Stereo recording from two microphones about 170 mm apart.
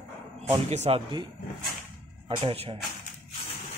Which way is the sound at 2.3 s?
35° right (ahead or behind).